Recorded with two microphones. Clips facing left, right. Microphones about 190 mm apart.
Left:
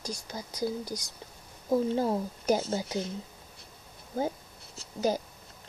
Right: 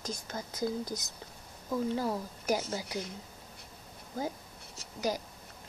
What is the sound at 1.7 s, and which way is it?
A woman's voice, 25° left (ahead or behind).